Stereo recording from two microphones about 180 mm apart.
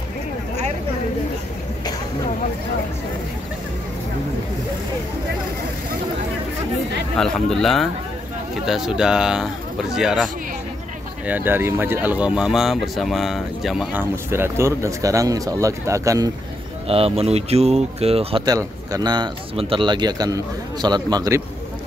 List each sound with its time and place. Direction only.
7.2 s speech: centre (ahead or behind)
14.3 s speech: 15° right (ahead or behind)
16.8 s speech: 35° right (ahead or behind)